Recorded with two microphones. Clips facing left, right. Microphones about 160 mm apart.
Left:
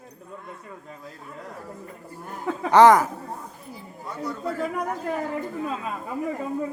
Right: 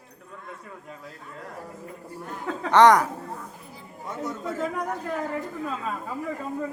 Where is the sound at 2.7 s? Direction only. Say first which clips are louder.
Left 2 dB; 5° left (ahead or behind).